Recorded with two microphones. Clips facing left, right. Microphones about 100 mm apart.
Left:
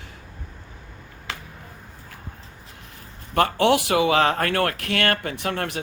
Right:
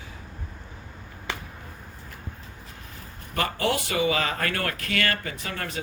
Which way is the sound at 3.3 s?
70° left (ahead or behind).